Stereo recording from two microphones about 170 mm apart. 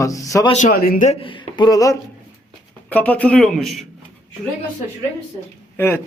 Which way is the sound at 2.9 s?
10° left (ahead or behind).